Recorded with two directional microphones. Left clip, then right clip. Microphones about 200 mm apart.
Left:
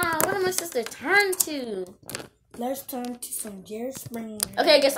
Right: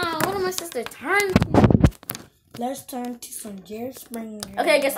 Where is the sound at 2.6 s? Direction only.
25° right (ahead or behind).